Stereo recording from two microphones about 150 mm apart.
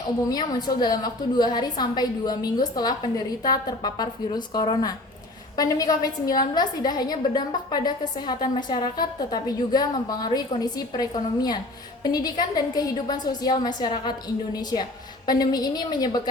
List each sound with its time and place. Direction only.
0.3 s a woman's voice: 25° left (ahead or behind)